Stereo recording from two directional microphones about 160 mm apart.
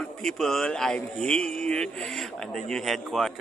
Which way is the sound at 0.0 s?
Centre (ahead or behind).